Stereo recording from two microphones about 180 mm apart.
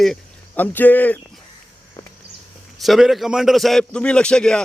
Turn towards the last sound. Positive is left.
turn(degrees=5)  # may be behind; listen again after turning